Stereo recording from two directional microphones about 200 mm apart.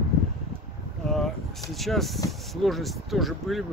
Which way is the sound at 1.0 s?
Centre (ahead or behind).